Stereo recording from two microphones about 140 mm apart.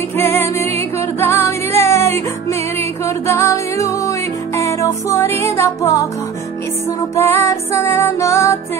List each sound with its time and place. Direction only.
0.2 s music: 20° left (ahead or behind)
7.0 s music: 20° left (ahead or behind)